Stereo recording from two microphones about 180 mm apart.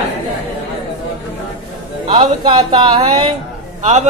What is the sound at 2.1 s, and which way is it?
Speech, 30° right (ahead or behind).